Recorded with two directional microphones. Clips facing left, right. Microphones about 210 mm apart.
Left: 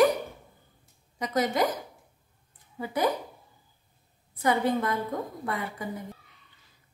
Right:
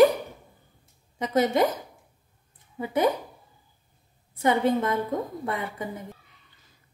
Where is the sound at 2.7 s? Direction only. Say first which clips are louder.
Right 4 dB; 25° right (ahead or behind).